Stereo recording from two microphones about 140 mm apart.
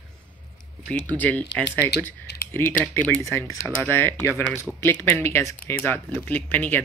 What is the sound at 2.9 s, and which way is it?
Speech, 15° left (ahead or behind).